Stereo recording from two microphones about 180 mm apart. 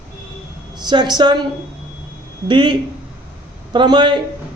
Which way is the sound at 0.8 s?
25° right (ahead or behind).